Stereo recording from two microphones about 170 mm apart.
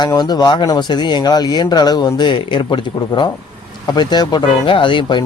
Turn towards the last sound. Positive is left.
turn(degrees=30)  # may be behind; listen again after turning